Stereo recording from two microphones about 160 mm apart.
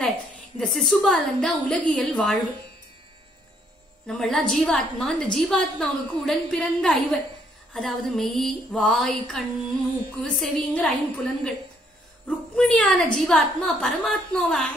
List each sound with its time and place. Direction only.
0.6 s a woman's voice: centre (ahead or behind)
4.1 s a woman's voice: 5° left (ahead or behind)